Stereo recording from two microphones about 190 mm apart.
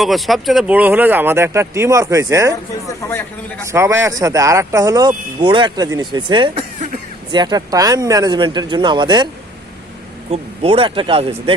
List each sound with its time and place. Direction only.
0.0 s speech: centre (ahead or behind); by 2.6 s 15° right (ahead or behind)
3.7 s speech: 15° right (ahead or behind)
10.3 s speech: 30° right (ahead or behind)